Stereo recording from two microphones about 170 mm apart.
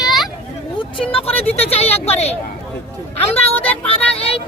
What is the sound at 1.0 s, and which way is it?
Speech, 35° left (ahead or behind).